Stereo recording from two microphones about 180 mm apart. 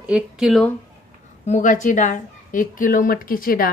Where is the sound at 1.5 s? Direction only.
45° left (ahead or behind).